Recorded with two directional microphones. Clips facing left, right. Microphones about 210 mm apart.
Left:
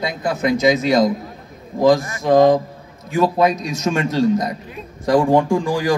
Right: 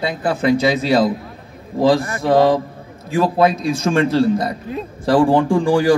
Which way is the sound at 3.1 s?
30° right (ahead or behind).